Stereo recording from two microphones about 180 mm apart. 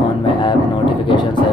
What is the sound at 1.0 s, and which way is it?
Music, 25° left (ahead or behind).